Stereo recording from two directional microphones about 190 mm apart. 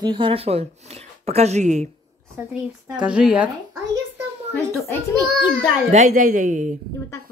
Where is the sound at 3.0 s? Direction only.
5° right (ahead or behind).